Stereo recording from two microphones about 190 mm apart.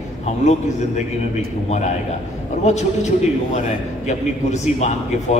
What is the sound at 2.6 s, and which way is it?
A man's voice, 35° left (ahead or behind).